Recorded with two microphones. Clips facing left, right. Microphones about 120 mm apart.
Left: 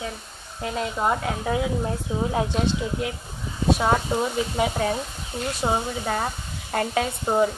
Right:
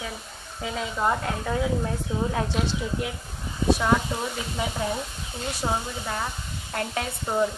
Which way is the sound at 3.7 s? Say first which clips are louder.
Left 5 dB; 25° left (ahead or behind).